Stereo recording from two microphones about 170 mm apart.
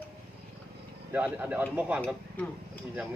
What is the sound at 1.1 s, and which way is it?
Speech, 5° right (ahead or behind).